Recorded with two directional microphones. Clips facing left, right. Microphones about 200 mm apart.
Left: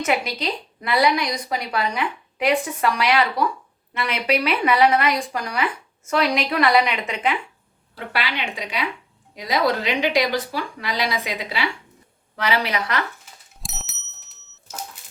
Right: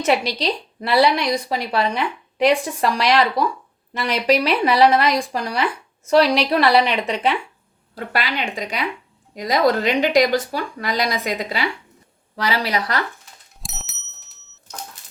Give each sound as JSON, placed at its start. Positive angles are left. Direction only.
{"t": 0.0, "sound": "a woman's voice", "side_deg": -30}
{"t": 7.9, "sound": "a woman's voice", "side_deg": -40}
{"t": 13.2, "sound": "bicycle bell", "side_deg": 0}